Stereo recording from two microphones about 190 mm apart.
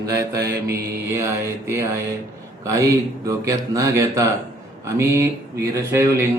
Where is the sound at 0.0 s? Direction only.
15° right (ahead or behind).